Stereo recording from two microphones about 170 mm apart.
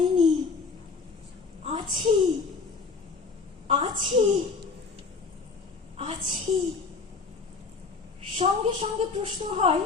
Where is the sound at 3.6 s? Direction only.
30° right (ahead or behind).